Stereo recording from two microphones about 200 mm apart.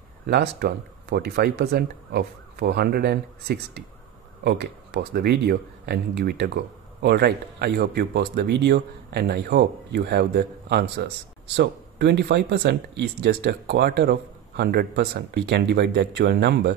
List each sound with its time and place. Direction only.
0.3 s speech: 50° right (ahead or behind)